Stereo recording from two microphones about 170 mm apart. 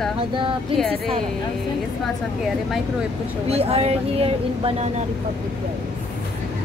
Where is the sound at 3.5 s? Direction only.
35° right (ahead or behind).